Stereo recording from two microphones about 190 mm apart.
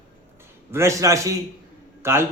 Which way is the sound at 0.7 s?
15° right (ahead or behind).